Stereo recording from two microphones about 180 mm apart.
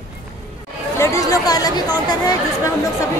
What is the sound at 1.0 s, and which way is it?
Chatter, 15° left (ahead or behind).